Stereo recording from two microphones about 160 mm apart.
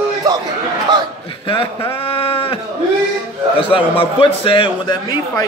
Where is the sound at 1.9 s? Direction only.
35° left (ahead or behind).